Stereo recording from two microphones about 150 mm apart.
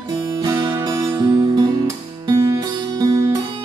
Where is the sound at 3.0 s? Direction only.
25° right (ahead or behind).